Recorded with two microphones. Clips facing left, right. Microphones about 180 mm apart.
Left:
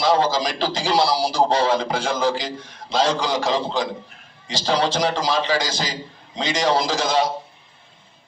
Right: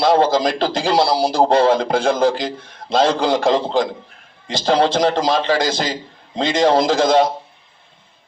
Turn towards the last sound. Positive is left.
turn(degrees=-55)  # may be behind; listen again after turning